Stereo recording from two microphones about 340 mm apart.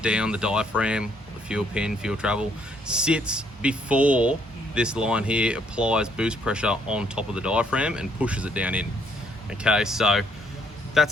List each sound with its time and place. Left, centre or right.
0.0 s speech: centre